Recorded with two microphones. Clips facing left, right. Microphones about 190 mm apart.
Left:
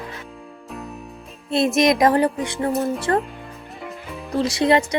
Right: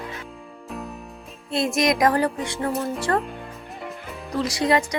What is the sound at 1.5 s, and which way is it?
Speech, 20° left (ahead or behind).